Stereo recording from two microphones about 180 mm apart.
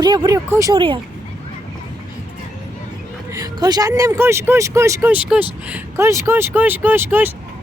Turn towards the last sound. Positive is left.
turn(degrees=-10)  # may be behind; listen again after turning